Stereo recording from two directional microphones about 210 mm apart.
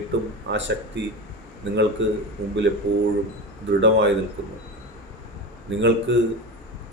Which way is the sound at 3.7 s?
60° right (ahead or behind).